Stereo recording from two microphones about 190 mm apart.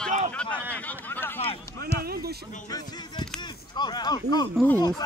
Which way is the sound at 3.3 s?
25° left (ahead or behind).